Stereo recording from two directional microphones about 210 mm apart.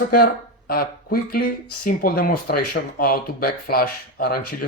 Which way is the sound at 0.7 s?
45° left (ahead or behind).